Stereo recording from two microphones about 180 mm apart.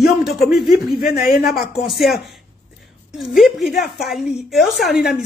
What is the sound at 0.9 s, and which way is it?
Speech, 55° left (ahead or behind).